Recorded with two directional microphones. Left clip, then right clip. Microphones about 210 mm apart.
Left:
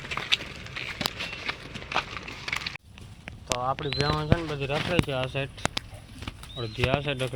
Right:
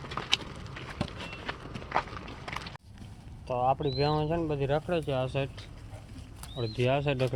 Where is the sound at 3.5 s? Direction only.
15° right (ahead or behind).